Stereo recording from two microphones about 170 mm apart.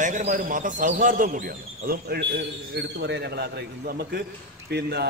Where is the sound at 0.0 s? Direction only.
50° right (ahead or behind).